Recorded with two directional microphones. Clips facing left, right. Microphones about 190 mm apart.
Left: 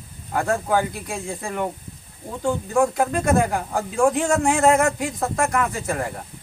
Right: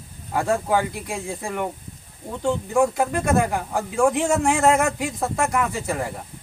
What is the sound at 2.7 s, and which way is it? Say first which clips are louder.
Speech: left 1 dB; 5° right (ahead or behind).